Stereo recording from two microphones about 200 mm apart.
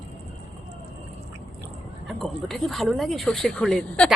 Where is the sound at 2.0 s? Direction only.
Centre (ahead or behind).